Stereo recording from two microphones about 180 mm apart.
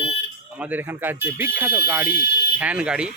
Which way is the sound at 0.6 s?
10° right (ahead or behind).